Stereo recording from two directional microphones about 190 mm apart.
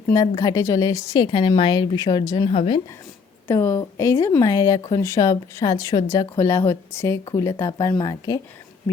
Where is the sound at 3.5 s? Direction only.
15° left (ahead or behind).